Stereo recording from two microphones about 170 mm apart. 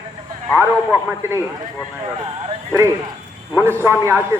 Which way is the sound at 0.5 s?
10° right (ahead or behind).